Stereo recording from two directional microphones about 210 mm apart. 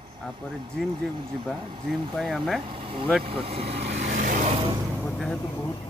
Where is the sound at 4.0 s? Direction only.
35° right (ahead or behind).